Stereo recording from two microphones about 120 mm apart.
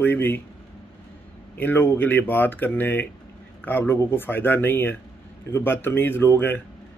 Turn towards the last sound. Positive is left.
turn(degrees=20)  # may be behind; listen again after turning